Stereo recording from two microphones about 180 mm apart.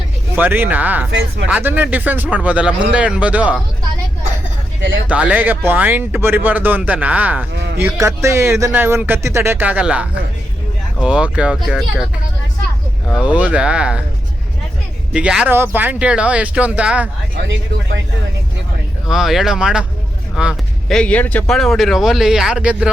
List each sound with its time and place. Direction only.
0.3 s speech: 10° right (ahead or behind)
5.0 s speech: 10° right (ahead or behind)
13.1 s speech: 10° right (ahead or behind)
15.1 s speech: 5° right (ahead or behind)
17.4 s speech: 80° right
19.0 s speech: centre (ahead or behind)